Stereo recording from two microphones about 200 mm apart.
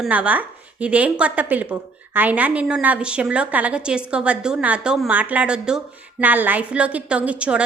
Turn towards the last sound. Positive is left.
turn(degrees=-5)  # may be behind; listen again after turning